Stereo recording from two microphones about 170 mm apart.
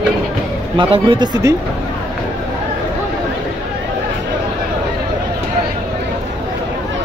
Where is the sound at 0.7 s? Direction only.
30° right (ahead or behind).